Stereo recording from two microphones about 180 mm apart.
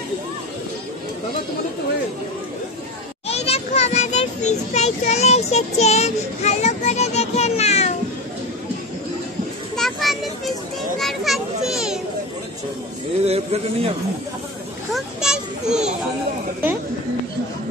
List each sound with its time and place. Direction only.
3.3 s a sound: 35° left (ahead or behind)
9.8 s children playing: centre (ahead or behind)
13.2 s a man's voice: 35° right (ahead or behind)
15.0 s children playing: 5° right (ahead or behind)